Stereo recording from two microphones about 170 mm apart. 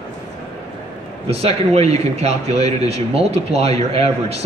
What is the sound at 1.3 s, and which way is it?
Speech, 40° right (ahead or behind).